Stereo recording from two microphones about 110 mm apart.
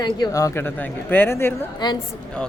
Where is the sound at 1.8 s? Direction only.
40° left (ahead or behind).